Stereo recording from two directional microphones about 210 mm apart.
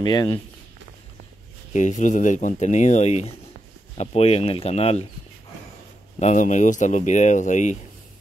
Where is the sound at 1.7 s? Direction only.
35° left (ahead or behind).